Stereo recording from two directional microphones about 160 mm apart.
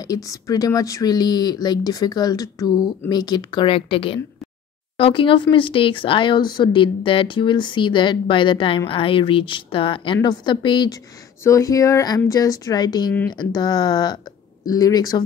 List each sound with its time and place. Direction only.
0.0 s speech: 20° left (ahead or behind)
11.4 s speech: 20° left (ahead or behind)